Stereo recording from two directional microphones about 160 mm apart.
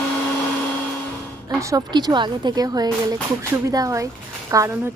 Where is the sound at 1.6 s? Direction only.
20° right (ahead or behind).